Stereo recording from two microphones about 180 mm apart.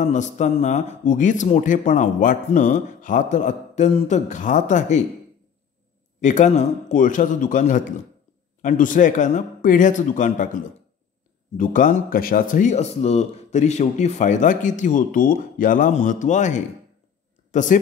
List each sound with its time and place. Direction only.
0.0 s speech: 40° left (ahead or behind)
6.2 s speech: 40° left (ahead or behind)